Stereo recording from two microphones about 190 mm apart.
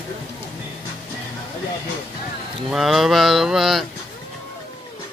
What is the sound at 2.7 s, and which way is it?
Speech, centre (ahead or behind).